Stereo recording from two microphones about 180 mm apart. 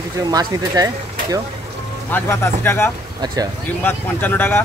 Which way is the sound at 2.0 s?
10° left (ahead or behind).